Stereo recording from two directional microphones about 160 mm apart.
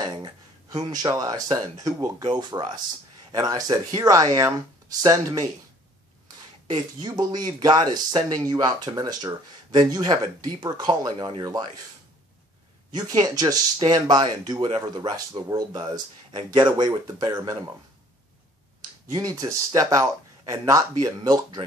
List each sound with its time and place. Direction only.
0.0 s speech: 25° right (ahead or behind)
6.7 s speech: 25° right (ahead or behind)
12.9 s speech: 25° right (ahead or behind)
19.1 s speech: 20° right (ahead or behind)